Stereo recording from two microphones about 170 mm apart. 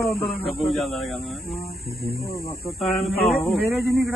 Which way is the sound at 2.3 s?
65° left (ahead or behind).